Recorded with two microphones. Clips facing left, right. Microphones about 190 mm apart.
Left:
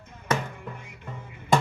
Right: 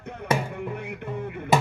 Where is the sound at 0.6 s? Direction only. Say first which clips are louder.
Right 10 dB; 65° right (ahead or behind).